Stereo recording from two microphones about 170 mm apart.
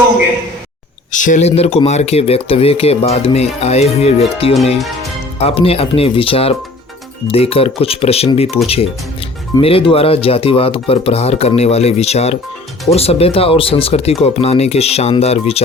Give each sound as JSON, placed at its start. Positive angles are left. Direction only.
{"t": 1.1, "sound": "speech", "side_deg": 50}